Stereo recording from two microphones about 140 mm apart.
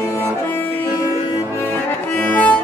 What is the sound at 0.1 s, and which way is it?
Music, 20° left (ahead or behind).